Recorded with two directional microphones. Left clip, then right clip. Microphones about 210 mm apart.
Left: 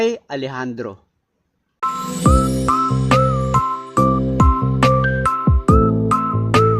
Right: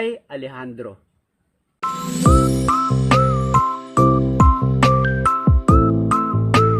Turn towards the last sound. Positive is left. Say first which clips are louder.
# left 1 dB
turn(degrees=0)  # may be behind; listen again after turning